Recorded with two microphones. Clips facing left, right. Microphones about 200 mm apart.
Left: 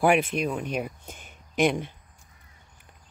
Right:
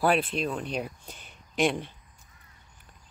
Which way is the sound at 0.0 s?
15° left (ahead or behind).